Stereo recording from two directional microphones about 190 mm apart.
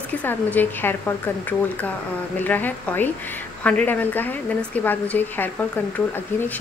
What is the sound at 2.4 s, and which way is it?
A woman's voice, 10° left (ahead or behind).